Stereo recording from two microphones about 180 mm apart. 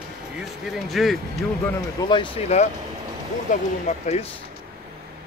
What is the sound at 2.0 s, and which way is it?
Speech, 25° left (ahead or behind).